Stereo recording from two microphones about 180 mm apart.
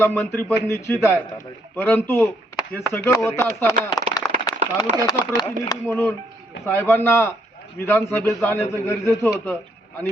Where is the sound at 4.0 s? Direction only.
20° left (ahead or behind).